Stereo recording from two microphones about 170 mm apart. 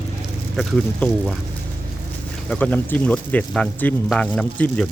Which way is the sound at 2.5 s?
10° left (ahead or behind).